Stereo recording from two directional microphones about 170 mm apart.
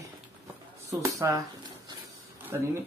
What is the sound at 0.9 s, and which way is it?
Speech, 20° right (ahead or behind).